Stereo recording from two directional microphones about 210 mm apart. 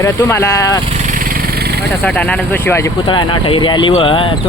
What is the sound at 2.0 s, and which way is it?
Speech, 5° left (ahead or behind).